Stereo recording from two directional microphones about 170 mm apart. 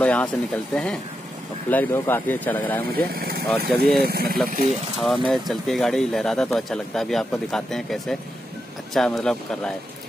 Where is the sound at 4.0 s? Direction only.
65° right (ahead or behind).